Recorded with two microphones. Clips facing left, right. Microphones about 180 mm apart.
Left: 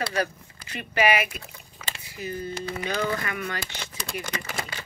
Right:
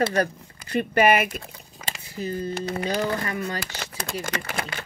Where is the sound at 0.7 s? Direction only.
50° right (ahead or behind); by 3.5 s 30° right (ahead or behind).